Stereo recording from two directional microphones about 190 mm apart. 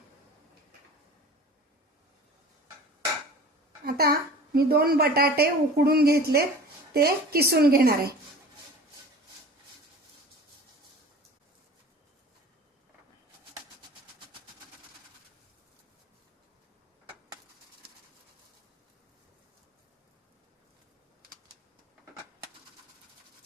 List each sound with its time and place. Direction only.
3.8 s a woman's voice: 55° right (ahead or behind)